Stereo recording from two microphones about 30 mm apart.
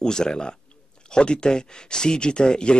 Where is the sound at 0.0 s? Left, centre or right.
Left.